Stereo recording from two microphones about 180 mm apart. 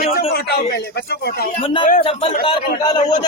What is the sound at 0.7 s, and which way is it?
Speech, 60° left (ahead or behind).